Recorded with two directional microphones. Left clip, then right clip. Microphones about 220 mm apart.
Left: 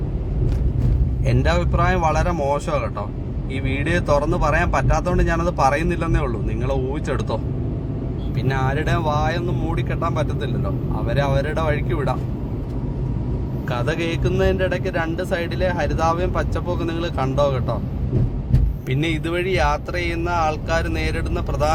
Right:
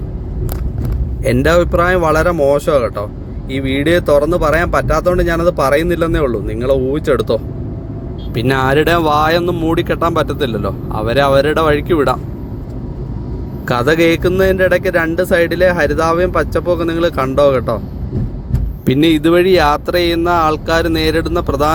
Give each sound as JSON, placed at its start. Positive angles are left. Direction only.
{"t": 1.2, "sound": "speech", "side_deg": -30}
{"t": 8.4, "sound": "speech", "side_deg": -40}
{"t": 13.7, "sound": "speech", "side_deg": -30}
{"t": 18.9, "sound": "speech", "side_deg": -45}